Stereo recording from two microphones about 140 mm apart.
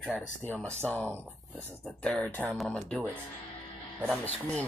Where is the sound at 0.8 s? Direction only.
10° left (ahead or behind).